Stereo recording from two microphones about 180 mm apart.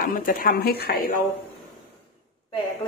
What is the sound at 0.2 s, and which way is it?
Speech, 50° left (ahead or behind).